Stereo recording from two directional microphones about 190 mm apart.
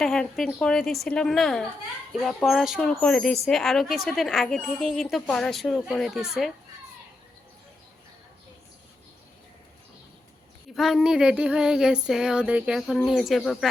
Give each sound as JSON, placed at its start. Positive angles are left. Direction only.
{"t": 0.0, "sound": "speech", "side_deg": 0}
{"t": 10.8, "sound": "speech", "side_deg": 0}